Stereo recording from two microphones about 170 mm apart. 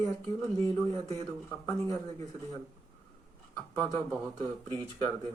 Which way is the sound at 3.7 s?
20° left (ahead or behind).